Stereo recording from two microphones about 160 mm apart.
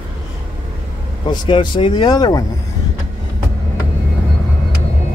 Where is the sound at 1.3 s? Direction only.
30° left (ahead or behind).